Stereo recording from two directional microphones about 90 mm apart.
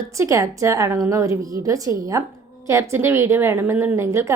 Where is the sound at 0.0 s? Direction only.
35° right (ahead or behind).